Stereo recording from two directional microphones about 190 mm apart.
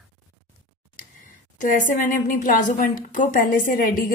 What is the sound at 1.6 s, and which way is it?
A woman's voice, 45° left (ahead or behind).